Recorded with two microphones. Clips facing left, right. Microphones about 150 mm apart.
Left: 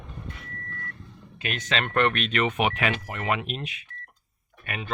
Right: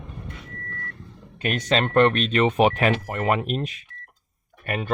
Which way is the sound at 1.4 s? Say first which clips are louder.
Right 7 dB; 40° right (ahead or behind).